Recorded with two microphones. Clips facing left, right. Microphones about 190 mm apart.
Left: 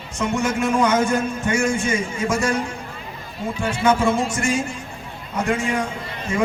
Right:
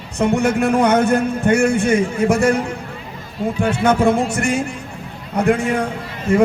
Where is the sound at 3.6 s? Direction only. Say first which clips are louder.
Right 3 dB; 60° right (ahead or behind).